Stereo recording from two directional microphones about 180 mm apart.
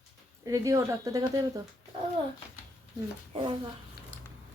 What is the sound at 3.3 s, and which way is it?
Speech, 25° right (ahead or behind).